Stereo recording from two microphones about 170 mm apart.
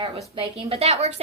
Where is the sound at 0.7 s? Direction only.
40° right (ahead or behind).